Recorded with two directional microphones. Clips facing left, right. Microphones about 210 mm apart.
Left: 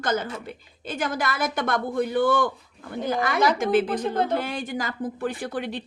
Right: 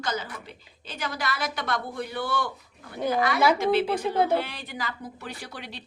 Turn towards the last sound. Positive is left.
turn(degrees=50)  # may be behind; listen again after turning